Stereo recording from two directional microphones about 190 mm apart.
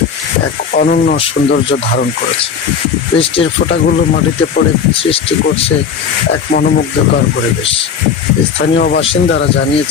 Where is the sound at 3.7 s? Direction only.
55° left (ahead or behind).